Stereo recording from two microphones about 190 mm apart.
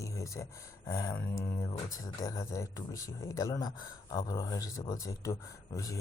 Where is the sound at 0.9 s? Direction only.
15° left (ahead or behind).